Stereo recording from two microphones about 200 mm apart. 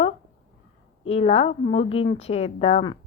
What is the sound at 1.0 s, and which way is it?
A woman's voice, 30° left (ahead or behind).